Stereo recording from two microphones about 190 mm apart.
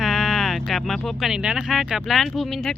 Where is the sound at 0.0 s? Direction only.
Centre (ahead or behind).